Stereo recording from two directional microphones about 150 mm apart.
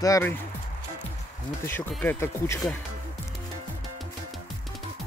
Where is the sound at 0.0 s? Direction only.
20° left (ahead or behind).